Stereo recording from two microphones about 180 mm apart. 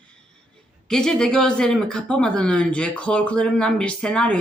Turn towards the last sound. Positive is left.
turn(degrees=5)  # may be behind; listen again after turning